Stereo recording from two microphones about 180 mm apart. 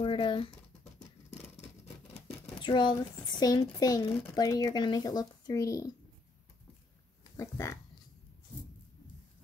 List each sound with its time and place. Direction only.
0.0 s a sound: 30° left (ahead or behind)
2.6 s speech: 25° left (ahead or behind)
7.3 s speech: 15° left (ahead or behind)